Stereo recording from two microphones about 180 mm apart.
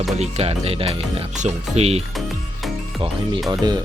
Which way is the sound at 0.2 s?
35° right (ahead or behind).